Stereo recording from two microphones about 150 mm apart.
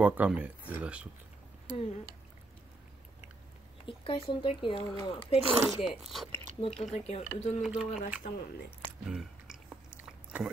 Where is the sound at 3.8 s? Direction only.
35° left (ahead or behind).